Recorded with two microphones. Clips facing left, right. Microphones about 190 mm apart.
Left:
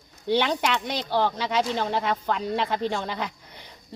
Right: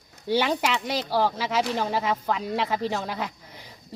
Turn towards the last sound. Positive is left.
turn(degrees=-5)  # may be behind; listen again after turning